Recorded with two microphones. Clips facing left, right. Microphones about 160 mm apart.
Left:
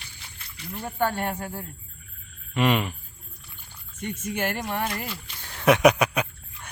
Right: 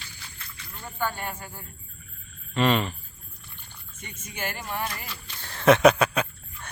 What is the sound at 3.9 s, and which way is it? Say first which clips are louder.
Speech: left 10 dB; 70° left (ahead or behind).